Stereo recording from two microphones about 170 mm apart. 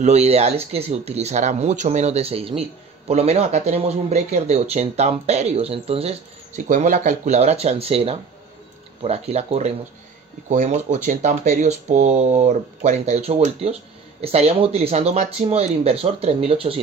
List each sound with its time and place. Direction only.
0.0 s speech: 40° right (ahead or behind)